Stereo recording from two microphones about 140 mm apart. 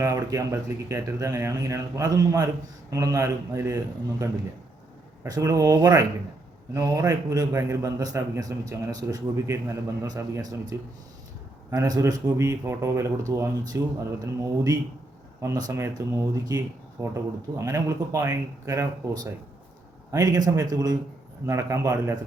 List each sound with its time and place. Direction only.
0.0 s a man's voice: 25° right (ahead or behind)
5.2 s a man's voice: 25° right (ahead or behind)